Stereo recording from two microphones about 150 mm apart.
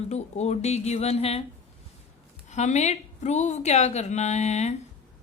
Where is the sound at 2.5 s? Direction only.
50° left (ahead or behind).